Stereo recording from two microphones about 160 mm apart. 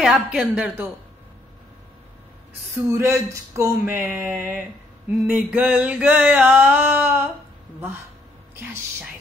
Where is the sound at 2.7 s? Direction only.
15° right (ahead or behind).